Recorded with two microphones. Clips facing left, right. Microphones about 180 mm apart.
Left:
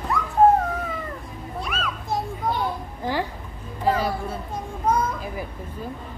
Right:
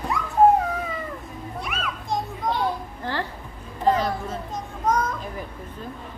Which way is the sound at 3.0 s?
10° left (ahead or behind).